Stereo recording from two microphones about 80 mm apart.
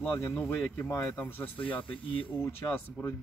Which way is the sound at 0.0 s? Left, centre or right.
Left.